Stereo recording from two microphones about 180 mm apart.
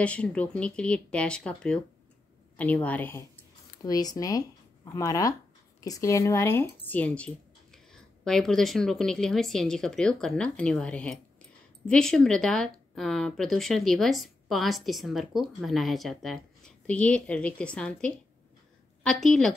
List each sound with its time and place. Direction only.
0.0 s a woman's voice: 5° left (ahead or behind)